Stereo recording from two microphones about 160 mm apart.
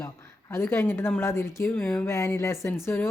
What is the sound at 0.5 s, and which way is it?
A woman's voice, 15° left (ahead or behind).